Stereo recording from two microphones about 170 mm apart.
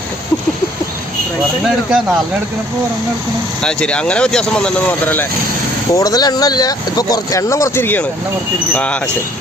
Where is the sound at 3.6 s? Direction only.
5° left (ahead or behind).